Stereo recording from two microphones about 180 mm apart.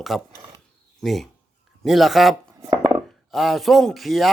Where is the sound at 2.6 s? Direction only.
20° right (ahead or behind).